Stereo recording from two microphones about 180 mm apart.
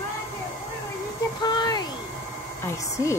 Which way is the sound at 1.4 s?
25° left (ahead or behind).